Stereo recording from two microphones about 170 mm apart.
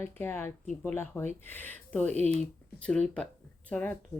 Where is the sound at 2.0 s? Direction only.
40° right (ahead or behind).